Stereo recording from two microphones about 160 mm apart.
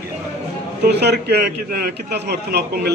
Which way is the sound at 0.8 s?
90° right.